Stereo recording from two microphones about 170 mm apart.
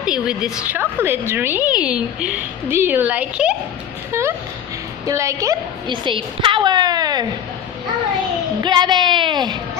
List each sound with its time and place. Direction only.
0.0 s a woman's voice: 5° right (ahead or behind); by 7.2 s 25° right (ahead or behind)
8.6 s a woman's voice: 25° right (ahead or behind)